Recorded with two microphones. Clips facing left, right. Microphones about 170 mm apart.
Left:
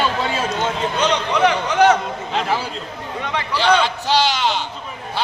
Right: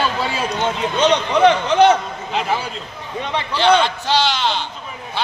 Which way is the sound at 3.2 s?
20° right (ahead or behind).